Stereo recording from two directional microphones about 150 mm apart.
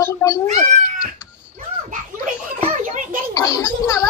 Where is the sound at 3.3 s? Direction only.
25° left (ahead or behind).